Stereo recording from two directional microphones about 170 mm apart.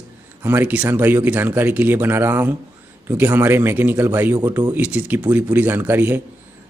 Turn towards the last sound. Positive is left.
turn(degrees=-10)  # may be behind; listen again after turning